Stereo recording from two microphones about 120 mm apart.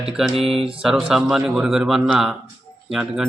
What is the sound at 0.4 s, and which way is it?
Mantra, 55° right (ahead or behind).